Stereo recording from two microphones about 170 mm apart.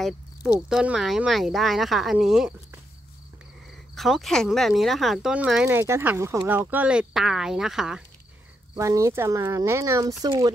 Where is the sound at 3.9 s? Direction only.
Centre (ahead or behind).